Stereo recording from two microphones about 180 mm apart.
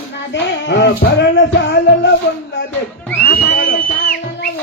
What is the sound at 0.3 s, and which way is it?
Music, 75° left (ahead or behind).